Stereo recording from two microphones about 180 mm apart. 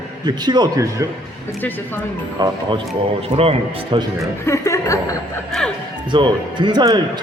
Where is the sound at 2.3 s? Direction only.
20° right (ahead or behind).